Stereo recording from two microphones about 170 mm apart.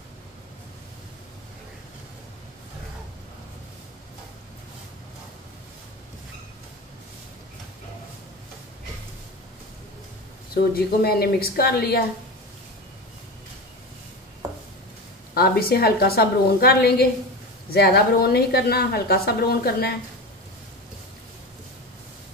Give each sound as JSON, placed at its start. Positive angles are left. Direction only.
{"t": 10.5, "sound": "a woman's voice", "side_deg": 65}
{"t": 15.3, "sound": "a woman's voice", "side_deg": 65}